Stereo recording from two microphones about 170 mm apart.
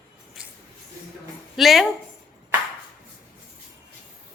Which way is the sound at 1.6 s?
Centre (ahead or behind).